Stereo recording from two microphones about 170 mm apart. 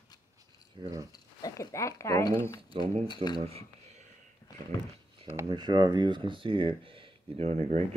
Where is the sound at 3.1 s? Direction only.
25° left (ahead or behind).